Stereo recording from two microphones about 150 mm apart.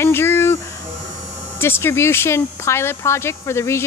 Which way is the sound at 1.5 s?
15° left (ahead or behind).